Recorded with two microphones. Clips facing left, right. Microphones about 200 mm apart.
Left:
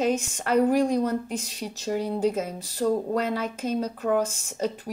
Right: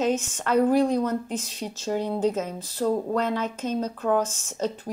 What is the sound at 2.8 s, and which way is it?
Speech, 60° right (ahead or behind).